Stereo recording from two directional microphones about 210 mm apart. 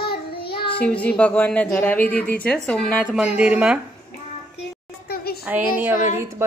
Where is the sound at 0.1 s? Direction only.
50° left (ahead or behind).